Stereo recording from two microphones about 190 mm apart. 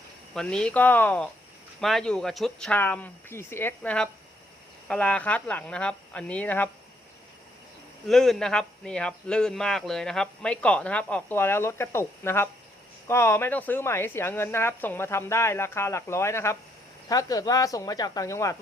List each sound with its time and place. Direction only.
0.3 s speech: 5° left (ahead or behind)
8.0 s speech: centre (ahead or behind); by 18.5 s 15° left (ahead or behind)